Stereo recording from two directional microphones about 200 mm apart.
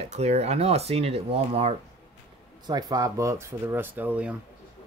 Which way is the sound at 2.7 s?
20° right (ahead or behind).